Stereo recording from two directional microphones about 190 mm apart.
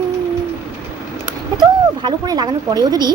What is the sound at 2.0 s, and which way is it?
A woman's voice, 25° right (ahead or behind).